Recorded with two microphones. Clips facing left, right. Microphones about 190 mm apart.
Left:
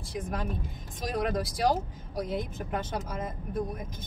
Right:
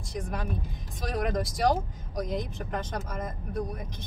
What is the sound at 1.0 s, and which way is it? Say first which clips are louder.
Speech: even; centre (ahead or behind).